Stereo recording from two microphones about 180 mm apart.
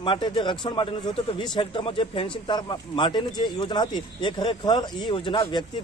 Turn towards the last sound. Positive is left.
turn(degrees=25)  # may be behind; listen again after turning